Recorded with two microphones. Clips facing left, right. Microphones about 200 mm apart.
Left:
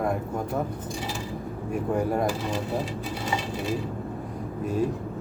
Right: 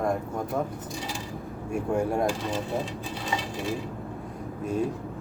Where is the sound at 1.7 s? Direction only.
Centre (ahead or behind).